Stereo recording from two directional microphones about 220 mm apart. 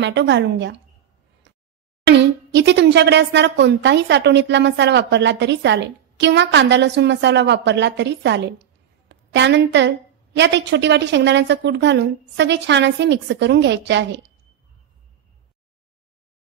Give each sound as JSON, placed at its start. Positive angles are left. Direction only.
{"t": 0.0, "sound": "speech", "side_deg": -55}
{"t": 2.0, "sound": "speech", "side_deg": -50}